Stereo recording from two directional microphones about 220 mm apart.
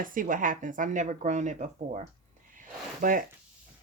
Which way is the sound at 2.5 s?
40° right (ahead or behind).